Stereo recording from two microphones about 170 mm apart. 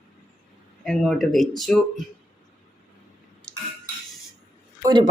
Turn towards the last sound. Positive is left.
turn(degrees=-25)  # may be behind; listen again after turning